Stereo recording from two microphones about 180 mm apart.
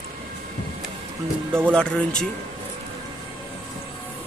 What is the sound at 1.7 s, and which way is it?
Speech, 5° left (ahead or behind).